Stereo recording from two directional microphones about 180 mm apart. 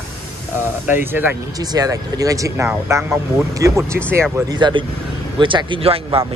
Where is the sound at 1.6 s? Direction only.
20° right (ahead or behind).